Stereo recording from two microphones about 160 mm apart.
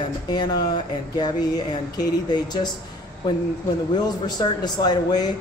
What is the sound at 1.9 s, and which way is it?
Speech, 25° left (ahead or behind).